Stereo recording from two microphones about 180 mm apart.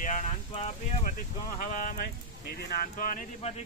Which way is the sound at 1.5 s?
55° left (ahead or behind).